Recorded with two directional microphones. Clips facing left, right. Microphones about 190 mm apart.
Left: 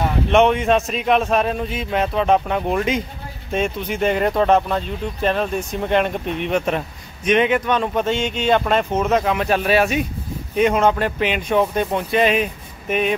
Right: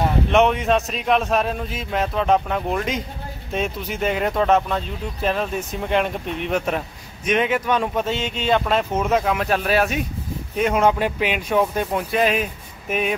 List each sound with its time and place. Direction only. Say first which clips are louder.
0.3 s speech: left 3 dB; centre (ahead or behind)